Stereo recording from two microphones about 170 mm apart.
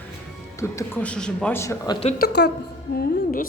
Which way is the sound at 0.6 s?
15° left (ahead or behind).